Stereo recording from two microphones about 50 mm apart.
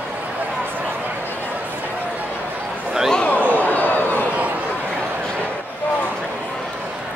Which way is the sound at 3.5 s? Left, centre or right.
Left.